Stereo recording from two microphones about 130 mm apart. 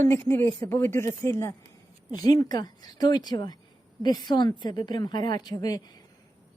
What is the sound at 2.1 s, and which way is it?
A woman's voice, 30° left (ahead or behind).